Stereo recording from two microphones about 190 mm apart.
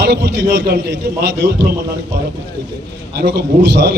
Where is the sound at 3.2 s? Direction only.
60° right (ahead or behind).